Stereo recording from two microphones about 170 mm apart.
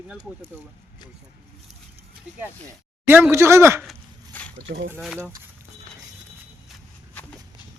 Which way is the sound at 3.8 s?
5° left (ahead or behind).